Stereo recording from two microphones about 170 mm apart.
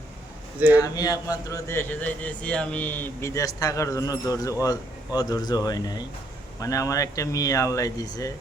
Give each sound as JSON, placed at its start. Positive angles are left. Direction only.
{"t": 0.8, "sound": "speech", "side_deg": 20}